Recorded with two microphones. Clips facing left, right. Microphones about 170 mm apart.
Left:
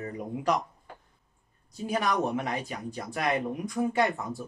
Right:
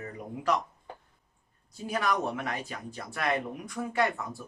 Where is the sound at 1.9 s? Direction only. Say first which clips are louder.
Left 2 dB; 15° left (ahead or behind).